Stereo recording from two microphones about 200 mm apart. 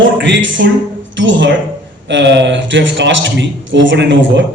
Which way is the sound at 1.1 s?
65° right (ahead or behind).